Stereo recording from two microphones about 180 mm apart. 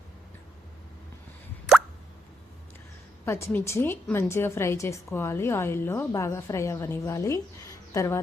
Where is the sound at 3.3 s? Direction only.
15° left (ahead or behind).